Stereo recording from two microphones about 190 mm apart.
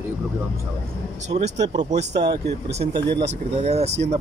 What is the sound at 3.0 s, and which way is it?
Speech, 60° right (ahead or behind).